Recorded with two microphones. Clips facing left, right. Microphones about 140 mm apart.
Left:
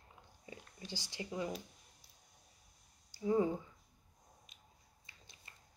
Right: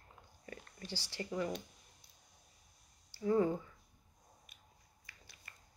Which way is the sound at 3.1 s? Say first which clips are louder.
Right 1 dB; 15° left (ahead or behind).